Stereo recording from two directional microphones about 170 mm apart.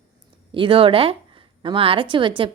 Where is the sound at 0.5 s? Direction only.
30° right (ahead or behind).